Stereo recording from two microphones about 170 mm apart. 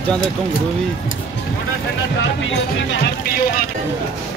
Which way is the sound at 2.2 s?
90° left.